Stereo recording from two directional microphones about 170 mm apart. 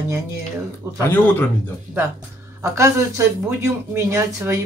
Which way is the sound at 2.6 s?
15° right (ahead or behind).